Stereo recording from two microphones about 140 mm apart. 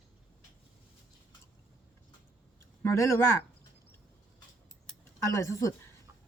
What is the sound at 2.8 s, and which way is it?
Speech, 20° left (ahead or behind).